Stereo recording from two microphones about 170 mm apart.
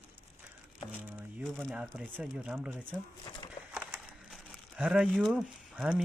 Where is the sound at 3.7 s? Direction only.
5° right (ahead or behind).